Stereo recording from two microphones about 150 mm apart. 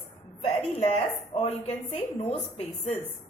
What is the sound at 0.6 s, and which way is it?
Speech, 40° left (ahead or behind).